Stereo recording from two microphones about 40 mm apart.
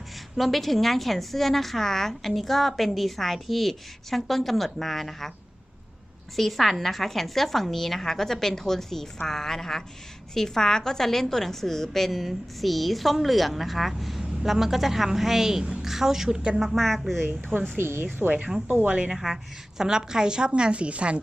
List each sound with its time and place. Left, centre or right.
0.3 s a woman's voice: centre
6.3 s a woman's voice: centre
17.7 s a woman's voice: right
18.9 s a woman's voice: right
19.1 s a woman's voice: centre
19.8 s a woman's voice: centre